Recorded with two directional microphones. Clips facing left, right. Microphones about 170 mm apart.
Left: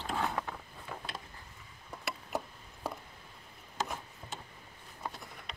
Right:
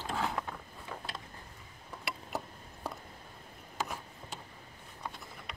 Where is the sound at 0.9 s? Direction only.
5° left (ahead or behind).